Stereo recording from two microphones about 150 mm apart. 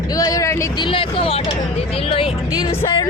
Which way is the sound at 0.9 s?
40° left (ahead or behind).